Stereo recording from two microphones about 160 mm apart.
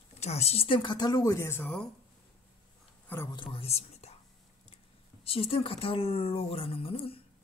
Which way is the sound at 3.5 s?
40° left (ahead or behind).